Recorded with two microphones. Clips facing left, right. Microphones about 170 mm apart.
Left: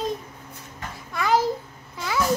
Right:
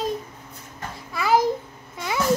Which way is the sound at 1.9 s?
20° right (ahead or behind).